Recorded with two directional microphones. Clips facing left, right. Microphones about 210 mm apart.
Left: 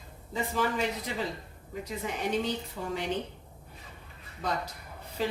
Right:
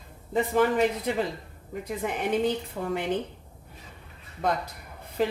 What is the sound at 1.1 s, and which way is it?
A woman's voice, 55° right (ahead or behind).